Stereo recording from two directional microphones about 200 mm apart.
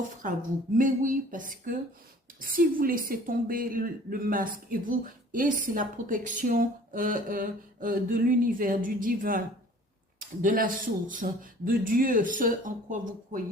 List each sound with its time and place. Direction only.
0.2 s a woman's voice: 40° right (ahead or behind)